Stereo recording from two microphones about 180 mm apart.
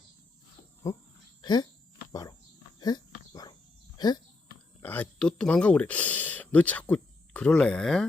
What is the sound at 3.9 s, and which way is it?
Speech, 25° left (ahead or behind).